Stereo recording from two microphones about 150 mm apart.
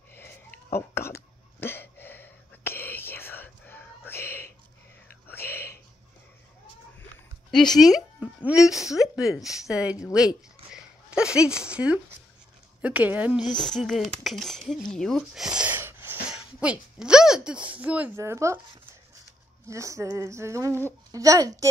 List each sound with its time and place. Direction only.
0.1 s a sound: 15° left (ahead or behind)
5.3 s whispering: 15° left (ahead or behind)
7.7 s speech: centre (ahead or behind)
10.1 s a sound: 5° right (ahead or behind)
12.8 s a woman's voice: 10° right (ahead or behind)
13.6 s speech: 5° left (ahead or behind); by 18.6 s 20° right (ahead or behind)
19.7 s speech: 20° right (ahead or behind)